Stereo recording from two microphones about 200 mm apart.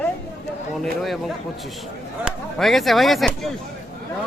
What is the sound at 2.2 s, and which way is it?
Speech, centre (ahead or behind).